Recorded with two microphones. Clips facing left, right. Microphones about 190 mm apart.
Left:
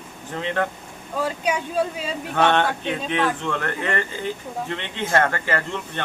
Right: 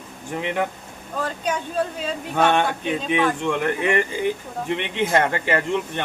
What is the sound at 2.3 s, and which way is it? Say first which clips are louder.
Speech: even; 10° right (ahead or behind).